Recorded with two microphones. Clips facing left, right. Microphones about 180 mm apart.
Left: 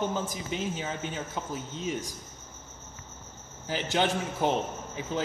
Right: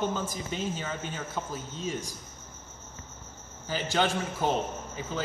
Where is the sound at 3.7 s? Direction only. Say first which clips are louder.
Even; 20° left (ahead or behind).